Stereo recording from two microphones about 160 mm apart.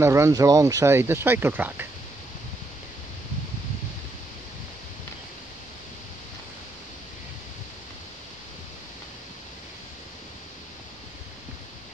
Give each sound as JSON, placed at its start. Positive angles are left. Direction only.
{"t": 0.0, "sound": "speech", "side_deg": -20}